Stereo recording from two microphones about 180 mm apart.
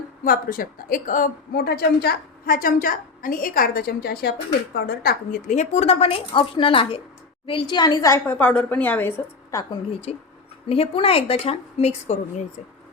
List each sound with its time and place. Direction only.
0.3 s a woman's voice: 50° left (ahead or behind); by 9.6 s 15° left (ahead or behind)
10.1 s a woman's voice: 40° left (ahead or behind)